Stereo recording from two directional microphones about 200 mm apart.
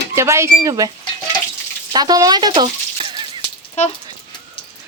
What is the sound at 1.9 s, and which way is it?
Speech, 20° right (ahead or behind).